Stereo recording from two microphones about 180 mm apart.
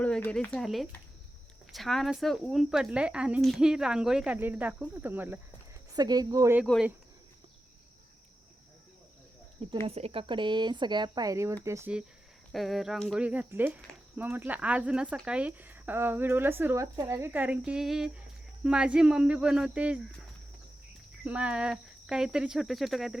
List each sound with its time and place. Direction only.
0.0 s speech: 5° left (ahead or behind); by 5.4 s 10° right (ahead or behind)
5.9 s speech: 20° right (ahead or behind)
9.8 s speech: 35° right (ahead or behind); by 20.0 s 5° right (ahead or behind)
21.2 s speech: 5° right (ahead or behind)